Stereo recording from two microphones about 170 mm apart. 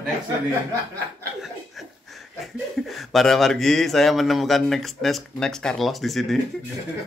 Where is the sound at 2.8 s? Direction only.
Centre (ahead or behind).